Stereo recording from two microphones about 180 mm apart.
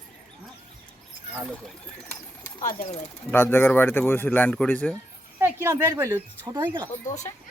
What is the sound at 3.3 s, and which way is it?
Speech, 10° left (ahead or behind).